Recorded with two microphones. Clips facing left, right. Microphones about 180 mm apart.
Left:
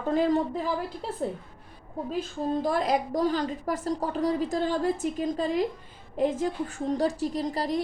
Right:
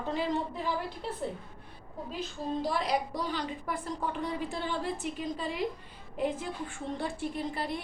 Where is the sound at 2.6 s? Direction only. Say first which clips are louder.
Left 3 dB; 45° left (ahead or behind).